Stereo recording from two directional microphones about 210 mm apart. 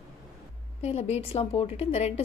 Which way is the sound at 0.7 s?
30° left (ahead or behind).